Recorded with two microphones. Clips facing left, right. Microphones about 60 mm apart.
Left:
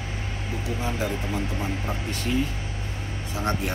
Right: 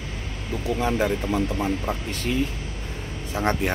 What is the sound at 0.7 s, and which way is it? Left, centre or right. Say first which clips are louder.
Speech: right 7 dB; right.